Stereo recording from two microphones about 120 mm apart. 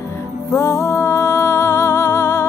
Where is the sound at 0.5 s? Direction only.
25° left (ahead or behind).